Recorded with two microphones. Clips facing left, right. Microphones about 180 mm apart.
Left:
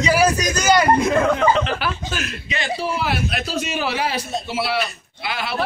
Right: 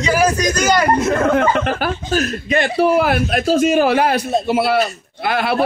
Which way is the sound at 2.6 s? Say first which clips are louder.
Right 10 dB; 60° right (ahead or behind).